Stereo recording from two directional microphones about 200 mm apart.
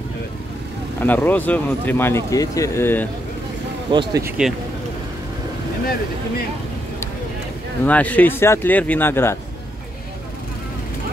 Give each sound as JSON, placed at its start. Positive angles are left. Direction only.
{"t": 1.0, "sound": "speech", "side_deg": 10}
{"t": 3.9, "sound": "speech", "side_deg": -25}
{"t": 4.2, "sound": "speech", "side_deg": -5}
{"t": 7.8, "sound": "speech", "side_deg": 5}